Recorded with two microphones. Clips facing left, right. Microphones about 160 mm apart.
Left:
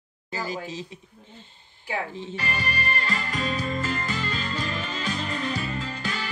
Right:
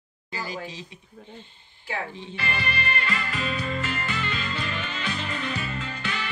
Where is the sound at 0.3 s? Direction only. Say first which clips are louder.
Left 2 dB; 40° left (ahead or behind).